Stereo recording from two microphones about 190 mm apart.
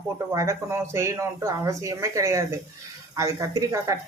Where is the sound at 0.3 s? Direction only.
15° right (ahead or behind).